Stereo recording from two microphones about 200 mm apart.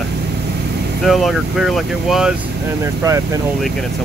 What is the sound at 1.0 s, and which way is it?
Speech, centre (ahead or behind).